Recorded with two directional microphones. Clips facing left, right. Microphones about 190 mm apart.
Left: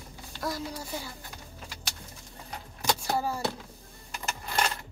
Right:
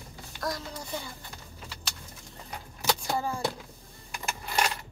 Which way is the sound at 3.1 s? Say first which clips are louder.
Left 1 dB; 5° left (ahead or behind).